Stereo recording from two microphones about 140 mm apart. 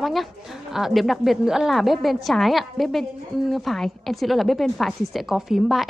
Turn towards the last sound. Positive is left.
turn(degrees=0)  # may be behind; listen again after turning